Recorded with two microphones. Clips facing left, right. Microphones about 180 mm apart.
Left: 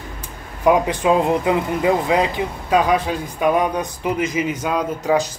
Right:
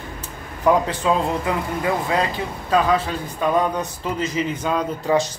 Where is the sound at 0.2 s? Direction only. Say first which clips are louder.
Left 2 dB; 15° left (ahead or behind).